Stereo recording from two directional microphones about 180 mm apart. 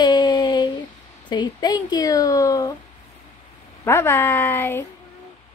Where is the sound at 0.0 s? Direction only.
25° left (ahead or behind).